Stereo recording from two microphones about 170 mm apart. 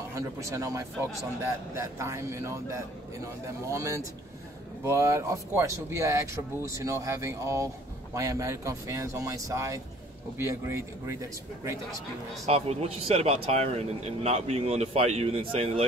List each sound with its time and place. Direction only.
0.1 s speech: 20° right (ahead or behind)
12.4 s a man's voice: 35° right (ahead or behind)